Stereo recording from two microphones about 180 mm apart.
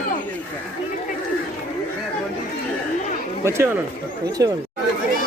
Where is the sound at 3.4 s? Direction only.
15° right (ahead or behind).